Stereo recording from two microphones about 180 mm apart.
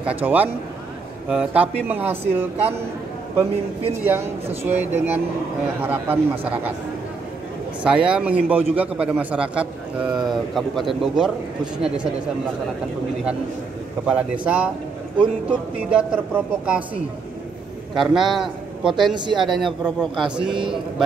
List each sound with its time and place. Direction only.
0.2 s a man's voice: 10° right (ahead or behind)
7.8 s a man's voice: 5° right (ahead or behind)
14.0 s a man's voice: 5° right (ahead or behind)
15.9 s a man's voice: 5° right (ahead or behind)
19.1 s a man's voice: 25° right (ahead or behind)
19.4 s a man's voice: centre (ahead or behind)